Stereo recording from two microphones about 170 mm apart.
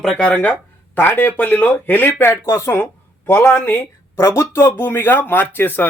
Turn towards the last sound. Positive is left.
turn(degrees=10)  # may be behind; listen again after turning